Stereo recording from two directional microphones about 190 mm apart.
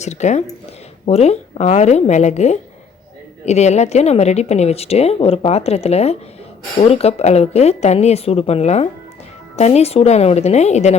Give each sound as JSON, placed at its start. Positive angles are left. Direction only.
{"t": 0.0, "sound": "a woman's voice", "side_deg": 35}